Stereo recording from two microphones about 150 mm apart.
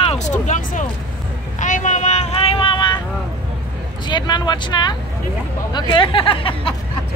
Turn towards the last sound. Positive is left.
turn(degrees=35)  # may be behind; listen again after turning